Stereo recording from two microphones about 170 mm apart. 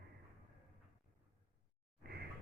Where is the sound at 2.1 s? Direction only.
70° right (ahead or behind).